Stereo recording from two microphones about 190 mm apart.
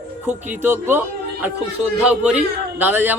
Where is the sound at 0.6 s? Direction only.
10° right (ahead or behind).